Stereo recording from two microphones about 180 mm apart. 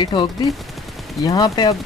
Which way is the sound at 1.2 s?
20° left (ahead or behind).